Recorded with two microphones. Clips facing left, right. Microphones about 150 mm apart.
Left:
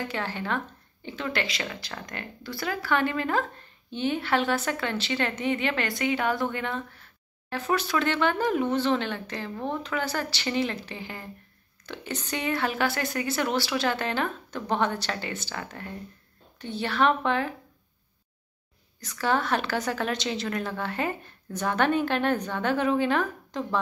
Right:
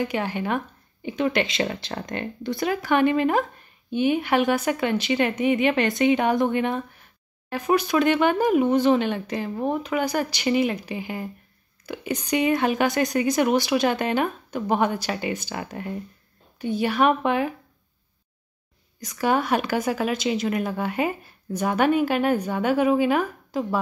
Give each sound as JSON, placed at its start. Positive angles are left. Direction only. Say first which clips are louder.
{"t": 0.0, "sound": "speech", "louder": "right 6 dB", "side_deg": -15}
{"t": 18.9, "sound": "speech", "louder": "right 4 dB", "side_deg": -15}